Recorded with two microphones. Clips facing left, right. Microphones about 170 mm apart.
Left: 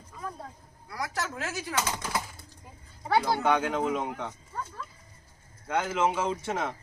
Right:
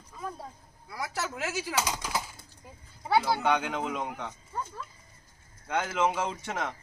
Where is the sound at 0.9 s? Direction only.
5° right (ahead or behind).